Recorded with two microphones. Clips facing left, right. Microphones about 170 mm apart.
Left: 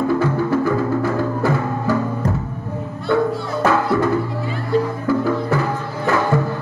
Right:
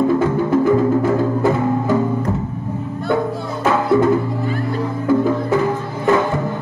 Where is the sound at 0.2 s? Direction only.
20° right (ahead or behind).